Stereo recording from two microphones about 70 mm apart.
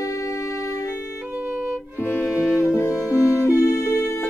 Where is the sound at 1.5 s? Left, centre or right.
Centre.